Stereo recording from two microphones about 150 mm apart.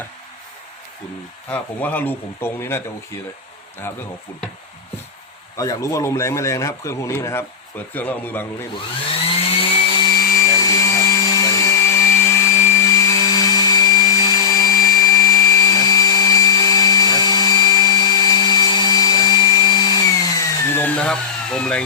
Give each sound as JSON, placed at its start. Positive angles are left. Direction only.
{"t": 1.5, "sound": "speech", "side_deg": 10}
{"t": 3.9, "sound": "speech", "side_deg": 15}
{"t": 5.5, "sound": "speech", "side_deg": 20}
{"t": 9.6, "sound": "chainsaw", "side_deg": 35}
{"t": 10.3, "sound": "a sound", "side_deg": 25}